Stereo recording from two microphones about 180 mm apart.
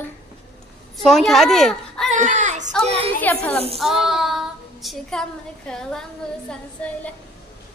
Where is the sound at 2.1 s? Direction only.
45° right (ahead or behind).